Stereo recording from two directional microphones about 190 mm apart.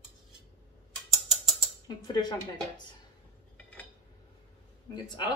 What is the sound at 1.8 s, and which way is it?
Speech, 20° left (ahead or behind).